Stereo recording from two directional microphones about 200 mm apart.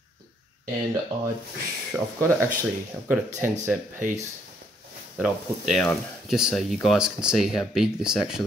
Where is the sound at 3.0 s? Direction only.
10° right (ahead or behind).